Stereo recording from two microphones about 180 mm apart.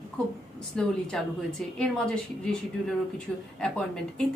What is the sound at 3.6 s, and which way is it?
Speech, 5° left (ahead or behind).